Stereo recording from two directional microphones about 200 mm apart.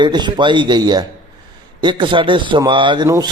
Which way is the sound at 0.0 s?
20° right (ahead or behind).